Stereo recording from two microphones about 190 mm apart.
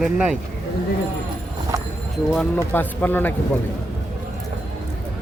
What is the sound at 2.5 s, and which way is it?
Speech, 10° left (ahead or behind).